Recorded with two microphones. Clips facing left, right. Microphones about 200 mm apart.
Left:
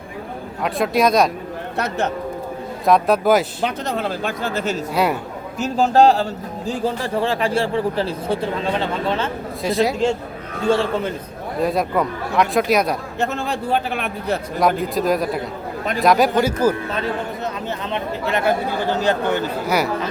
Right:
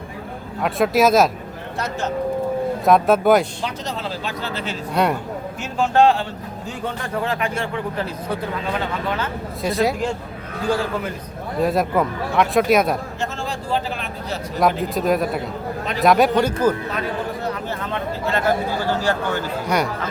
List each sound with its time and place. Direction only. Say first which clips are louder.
0.6 s speech: right 1 dB; centre (ahead or behind)
2.8 s speech: even; centre (ahead or behind)
3.6 s a man's voice: left 5 dB; 55° left (ahead or behind); by 9.3 s 25° left (ahead or behind)
9.6 s speech: left 1 dB; centre (ahead or behind)
10.7 s speech: left 4 dB; 25° left (ahead or behind)
11.6 s speech: right 1 dB; centre (ahead or behind)
13.1 s a man's voice: left 4 dB; 60° left (ahead or behind)
14.8 s speech: even; centre (ahead or behind)
16.9 s speech: left 1 dB; 25° left (ahead or behind)
19.6 s speech: even; 5° left (ahead or behind)